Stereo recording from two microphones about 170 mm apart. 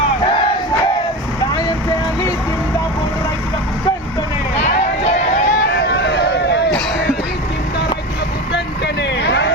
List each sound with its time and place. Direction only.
5.3 s vehicle: 60° left (ahead or behind); by 6.7 s 85° left
6.7 s a sound: 5° left (ahead or behind)
8.5 s vehicle: 85° left